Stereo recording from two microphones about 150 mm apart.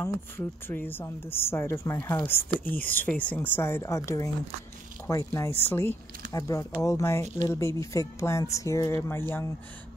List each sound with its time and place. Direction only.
0.0 s a woman's voice: 15° left (ahead or behind)